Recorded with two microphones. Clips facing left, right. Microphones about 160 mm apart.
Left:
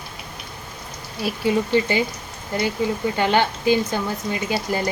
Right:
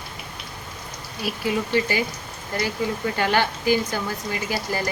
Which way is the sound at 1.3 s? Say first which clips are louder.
Left 4 dB; 25° left (ahead or behind).